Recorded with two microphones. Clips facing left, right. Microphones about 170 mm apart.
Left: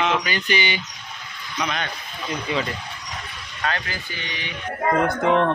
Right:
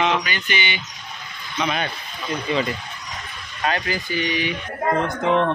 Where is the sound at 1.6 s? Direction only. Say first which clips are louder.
Right 3 dB; 5° right (ahead or behind).